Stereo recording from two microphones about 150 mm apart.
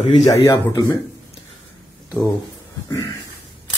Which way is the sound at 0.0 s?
45° left (ahead or behind).